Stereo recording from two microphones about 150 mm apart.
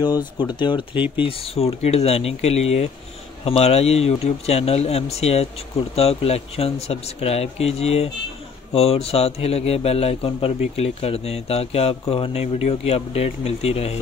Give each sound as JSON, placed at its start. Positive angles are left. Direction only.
{"t": 0.4, "sound": "a man's voice", "side_deg": 30}
{"t": 0.9, "sound": "speech", "side_deg": -10}
{"t": 1.2, "sound": "a man's voice", "side_deg": 40}